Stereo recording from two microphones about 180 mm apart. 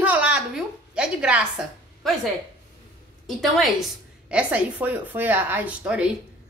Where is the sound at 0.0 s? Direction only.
10° right (ahead or behind).